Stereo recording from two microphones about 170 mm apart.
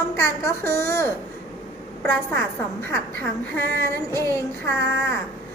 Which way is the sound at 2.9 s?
15° left (ahead or behind).